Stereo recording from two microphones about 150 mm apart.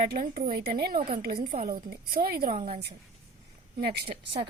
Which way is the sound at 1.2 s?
90° right.